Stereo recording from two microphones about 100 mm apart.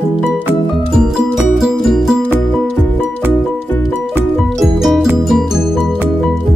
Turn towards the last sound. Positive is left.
turn(degrees=0)  # may be behind; listen again after turning